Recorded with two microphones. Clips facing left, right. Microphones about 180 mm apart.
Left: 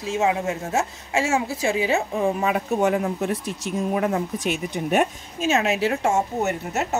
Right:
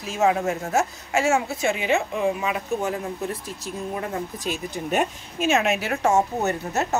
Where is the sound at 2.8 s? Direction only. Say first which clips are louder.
Left 6 dB; 75° left (ahead or behind).